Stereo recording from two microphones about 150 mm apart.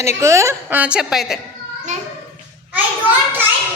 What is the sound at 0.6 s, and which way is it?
Speech, 10° right (ahead or behind).